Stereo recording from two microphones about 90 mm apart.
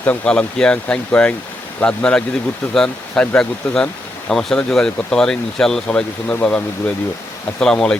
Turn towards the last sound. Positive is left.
turn(degrees=5)  # may be behind; listen again after turning